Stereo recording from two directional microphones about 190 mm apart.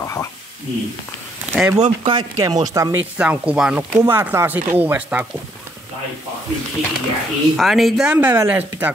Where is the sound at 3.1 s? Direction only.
5° right (ahead or behind).